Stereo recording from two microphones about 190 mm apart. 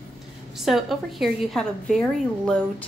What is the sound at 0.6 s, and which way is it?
A woman's voice, centre (ahead or behind).